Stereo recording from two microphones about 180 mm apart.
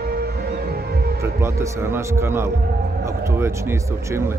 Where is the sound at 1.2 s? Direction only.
15° right (ahead or behind).